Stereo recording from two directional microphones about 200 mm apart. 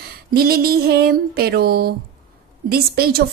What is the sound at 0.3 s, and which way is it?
A woman's voice, 50° right (ahead or behind).